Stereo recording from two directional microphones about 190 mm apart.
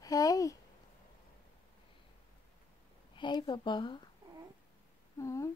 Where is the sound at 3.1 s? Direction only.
25° left (ahead or behind).